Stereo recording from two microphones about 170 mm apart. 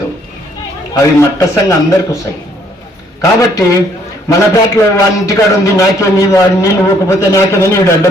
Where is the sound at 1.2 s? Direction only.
15° left (ahead or behind).